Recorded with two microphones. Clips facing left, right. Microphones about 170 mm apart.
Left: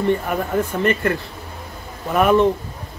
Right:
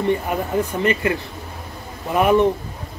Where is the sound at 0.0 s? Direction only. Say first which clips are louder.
Left 1 dB; 15° right (ahead or behind).